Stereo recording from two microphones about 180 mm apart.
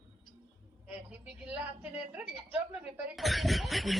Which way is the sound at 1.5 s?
10° right (ahead or behind).